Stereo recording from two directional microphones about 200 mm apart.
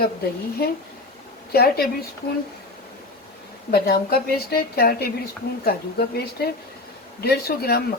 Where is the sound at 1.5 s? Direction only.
50° left (ahead or behind).